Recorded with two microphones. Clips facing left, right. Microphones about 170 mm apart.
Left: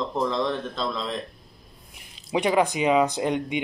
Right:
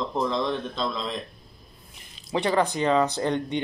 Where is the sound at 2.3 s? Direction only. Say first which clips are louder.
Left 2 dB; 10° left (ahead or behind).